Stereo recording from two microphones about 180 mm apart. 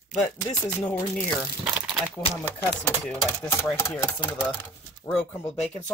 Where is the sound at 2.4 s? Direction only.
10° left (ahead or behind).